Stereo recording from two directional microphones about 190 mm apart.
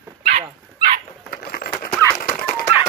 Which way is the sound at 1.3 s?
50° left (ahead or behind).